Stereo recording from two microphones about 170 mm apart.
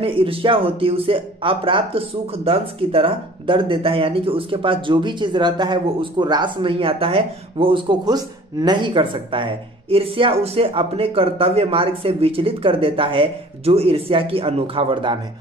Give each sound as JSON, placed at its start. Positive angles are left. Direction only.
{"t": 0.0, "sound": "speech", "side_deg": -30}